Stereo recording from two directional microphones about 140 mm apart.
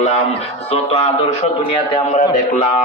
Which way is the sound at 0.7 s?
45° left (ahead or behind).